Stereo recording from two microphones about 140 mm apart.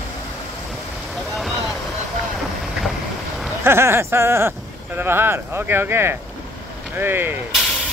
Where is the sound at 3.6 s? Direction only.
15° right (ahead or behind).